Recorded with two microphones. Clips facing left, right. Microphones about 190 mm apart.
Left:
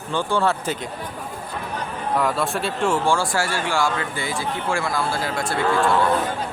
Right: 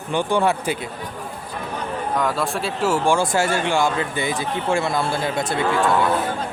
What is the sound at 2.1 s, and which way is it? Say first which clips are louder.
Speech: left 1 dB; centre (ahead or behind).